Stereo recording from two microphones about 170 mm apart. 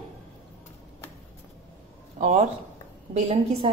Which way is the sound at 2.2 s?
45° right (ahead or behind).